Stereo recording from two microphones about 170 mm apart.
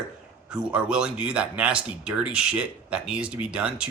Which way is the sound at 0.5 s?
5° right (ahead or behind).